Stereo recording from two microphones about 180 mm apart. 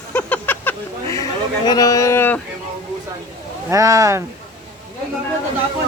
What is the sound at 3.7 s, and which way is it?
Speech, 15° right (ahead or behind).